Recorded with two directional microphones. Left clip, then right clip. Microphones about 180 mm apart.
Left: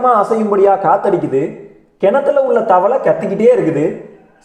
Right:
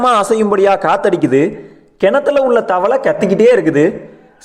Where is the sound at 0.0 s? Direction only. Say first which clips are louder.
Even; 40° right (ahead or behind).